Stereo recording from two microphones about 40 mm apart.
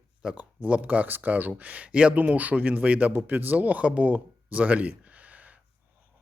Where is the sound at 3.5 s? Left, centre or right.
Right.